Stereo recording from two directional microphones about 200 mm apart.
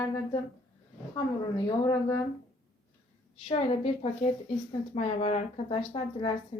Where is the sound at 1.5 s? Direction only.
20° left (ahead or behind).